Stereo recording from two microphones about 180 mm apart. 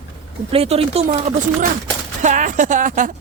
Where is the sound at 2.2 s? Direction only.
45° right (ahead or behind).